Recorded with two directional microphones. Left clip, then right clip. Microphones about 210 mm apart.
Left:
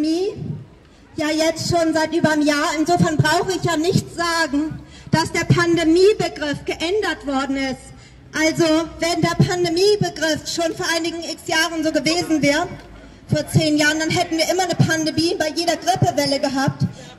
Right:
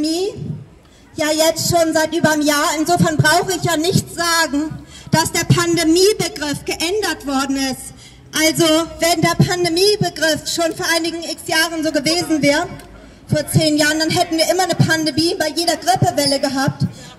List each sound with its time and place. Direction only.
0.0 s a child's voice: 25° right (ahead or behind); by 16.9 s 5° right (ahead or behind)